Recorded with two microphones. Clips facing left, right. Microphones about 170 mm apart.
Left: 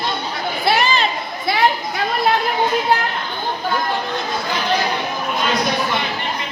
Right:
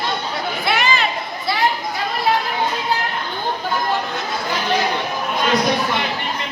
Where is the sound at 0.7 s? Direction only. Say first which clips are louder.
Left 3 dB; 35° left (ahead or behind).